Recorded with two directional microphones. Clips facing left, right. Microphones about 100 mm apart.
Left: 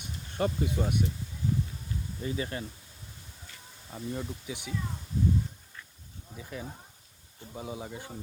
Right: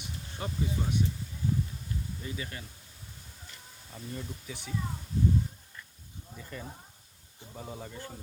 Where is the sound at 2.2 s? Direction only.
30° left (ahead or behind).